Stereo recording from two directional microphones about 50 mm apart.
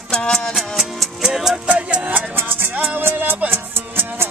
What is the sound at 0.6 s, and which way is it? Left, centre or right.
Music, centre.